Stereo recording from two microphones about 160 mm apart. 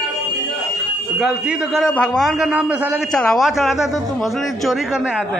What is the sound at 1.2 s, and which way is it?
Speech, 5° right (ahead or behind).